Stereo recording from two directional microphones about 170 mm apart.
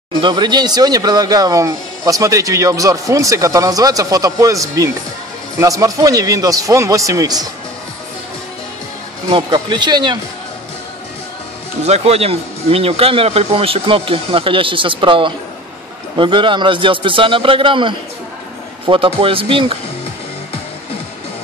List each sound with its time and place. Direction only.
0.2 s speech: 25° right (ahead or behind)
9.3 s speech: 30° right (ahead or behind)
11.8 s speech: 40° right (ahead or behind)